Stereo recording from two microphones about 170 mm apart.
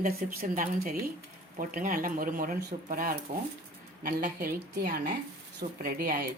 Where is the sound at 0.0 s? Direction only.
50° right (ahead or behind).